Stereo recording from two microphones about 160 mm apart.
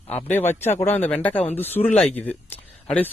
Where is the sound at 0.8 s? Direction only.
15° left (ahead or behind).